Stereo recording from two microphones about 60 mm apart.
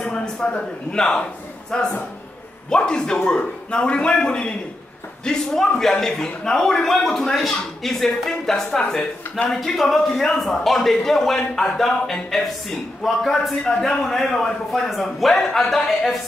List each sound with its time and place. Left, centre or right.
0.0 s a man's voice: centre